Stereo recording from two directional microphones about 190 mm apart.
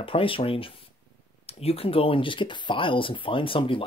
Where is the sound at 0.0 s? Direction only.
30° left (ahead or behind).